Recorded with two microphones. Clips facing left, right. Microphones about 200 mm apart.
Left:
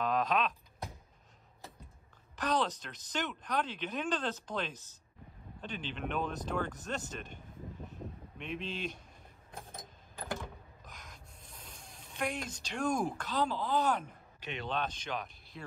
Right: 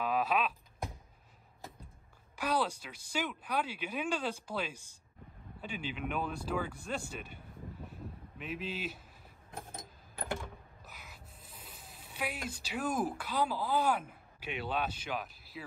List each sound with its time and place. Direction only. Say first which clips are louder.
0.0 s a sound: left 1 dB; 10° right (ahead or behind)
2.3 s speech: even; 10° right (ahead or behind)
10.9 s speech: even; 5° right (ahead or behind)